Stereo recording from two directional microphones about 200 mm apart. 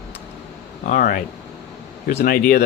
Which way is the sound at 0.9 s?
45° left (ahead or behind).